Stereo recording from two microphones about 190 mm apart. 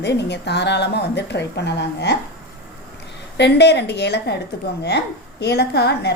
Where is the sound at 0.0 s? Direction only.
65° left (ahead or behind).